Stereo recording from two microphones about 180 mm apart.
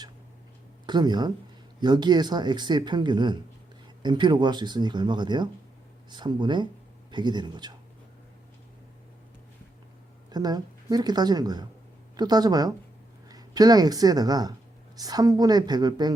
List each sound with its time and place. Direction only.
0.9 s speech: 25° right (ahead or behind)
10.3 s speech: 20° right (ahead or behind)